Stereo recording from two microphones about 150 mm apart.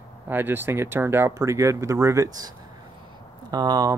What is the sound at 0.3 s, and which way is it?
Speech, 15° right (ahead or behind).